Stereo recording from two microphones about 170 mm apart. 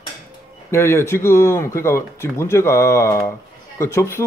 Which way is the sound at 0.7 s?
15° left (ahead or behind).